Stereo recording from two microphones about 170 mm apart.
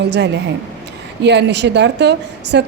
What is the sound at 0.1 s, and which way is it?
A woman's voice, 90° right.